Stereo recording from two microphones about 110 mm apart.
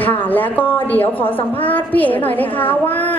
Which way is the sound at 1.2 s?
55° left (ahead or behind).